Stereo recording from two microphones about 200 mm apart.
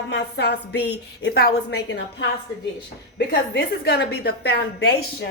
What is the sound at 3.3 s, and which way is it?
A woman's voice, 55° left (ahead or behind).